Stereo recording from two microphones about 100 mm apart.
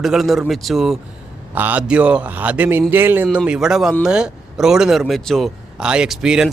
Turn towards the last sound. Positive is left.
turn(degrees=-5)  # may be behind; listen again after turning